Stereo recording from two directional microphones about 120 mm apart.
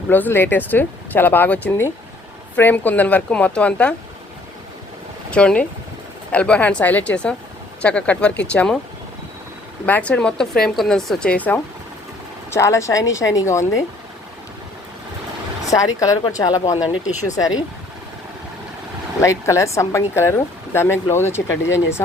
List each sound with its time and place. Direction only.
0.1 s speech: 15° left (ahead or behind)
5.3 s speech: 10° left (ahead or behind)
9.8 s speech: 10° left (ahead or behind)
12.5 s speech: 25° left (ahead or behind)
15.7 s speech: 30° left (ahead or behind)
17.0 s speech: 80° left
19.2 s speech: 25° left (ahead or behind)